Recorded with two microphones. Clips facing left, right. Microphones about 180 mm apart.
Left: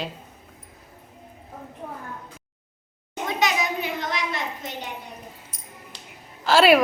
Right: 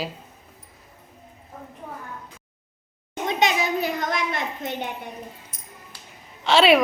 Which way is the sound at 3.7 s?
45° right (ahead or behind).